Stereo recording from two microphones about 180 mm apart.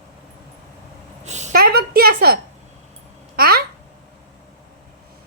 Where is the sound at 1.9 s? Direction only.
60° right (ahead or behind).